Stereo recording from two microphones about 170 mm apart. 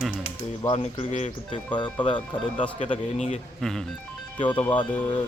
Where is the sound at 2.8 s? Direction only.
40° left (ahead or behind).